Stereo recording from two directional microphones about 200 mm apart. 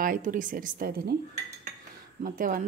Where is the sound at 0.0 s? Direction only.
45° right (ahead or behind).